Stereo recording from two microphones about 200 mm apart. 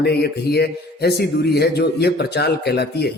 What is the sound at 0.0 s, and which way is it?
A man's voice, 55° left (ahead or behind).